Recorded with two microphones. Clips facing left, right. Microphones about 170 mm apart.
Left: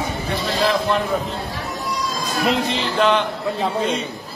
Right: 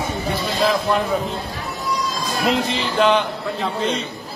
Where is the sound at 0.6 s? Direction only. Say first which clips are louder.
Right 1 dB; centre (ahead or behind).